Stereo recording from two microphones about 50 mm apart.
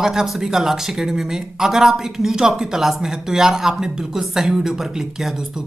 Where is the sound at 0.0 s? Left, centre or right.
Centre.